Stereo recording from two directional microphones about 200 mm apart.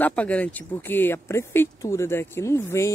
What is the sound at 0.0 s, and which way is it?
Speech, 5° left (ahead or behind).